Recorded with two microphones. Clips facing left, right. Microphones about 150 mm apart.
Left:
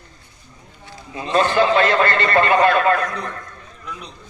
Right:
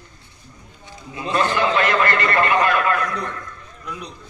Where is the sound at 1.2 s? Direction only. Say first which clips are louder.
Left 3 dB; 30° left (ahead or behind).